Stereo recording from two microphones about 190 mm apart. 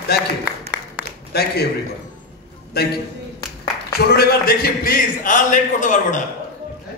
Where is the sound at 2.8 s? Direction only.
55° left (ahead or behind).